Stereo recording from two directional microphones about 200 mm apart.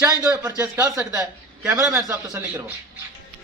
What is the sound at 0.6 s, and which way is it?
A man's voice, 15° right (ahead or behind).